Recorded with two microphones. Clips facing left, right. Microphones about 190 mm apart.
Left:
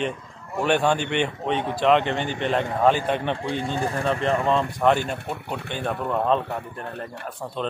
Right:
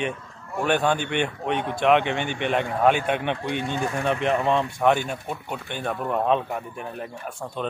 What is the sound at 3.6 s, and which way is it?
Speech, 30° left (ahead or behind).